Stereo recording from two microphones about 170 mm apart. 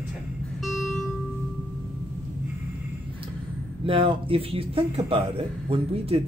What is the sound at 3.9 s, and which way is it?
Speech, 30° right (ahead or behind).